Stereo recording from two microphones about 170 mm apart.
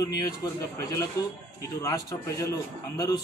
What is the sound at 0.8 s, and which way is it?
A man's voice, 20° left (ahead or behind).